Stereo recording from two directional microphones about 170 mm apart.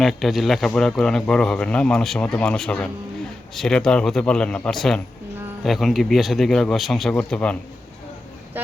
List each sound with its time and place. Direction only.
0.0 s a man's voice: centre (ahead or behind)